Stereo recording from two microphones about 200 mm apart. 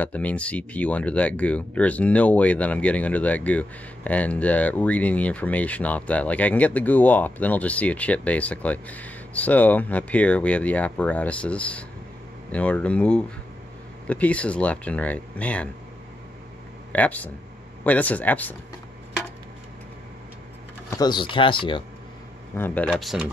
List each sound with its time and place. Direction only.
0.0 s speech: 5° left (ahead or behind)
16.9 s speech: 10° left (ahead or behind)
21.0 s speech: 25° left (ahead or behind)
22.6 s speech: 5° left (ahead or behind)